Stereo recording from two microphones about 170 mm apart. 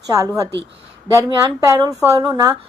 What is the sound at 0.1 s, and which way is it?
Speech, 20° right (ahead or behind).